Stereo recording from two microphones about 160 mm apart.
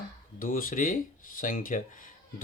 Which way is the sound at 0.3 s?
60° left (ahead or behind).